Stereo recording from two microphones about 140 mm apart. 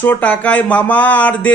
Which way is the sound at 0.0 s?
10° left (ahead or behind).